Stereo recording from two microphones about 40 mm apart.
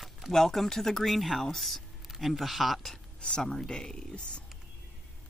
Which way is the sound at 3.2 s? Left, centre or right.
Centre.